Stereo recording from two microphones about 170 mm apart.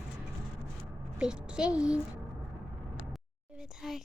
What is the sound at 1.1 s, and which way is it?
Speech, 5° right (ahead or behind).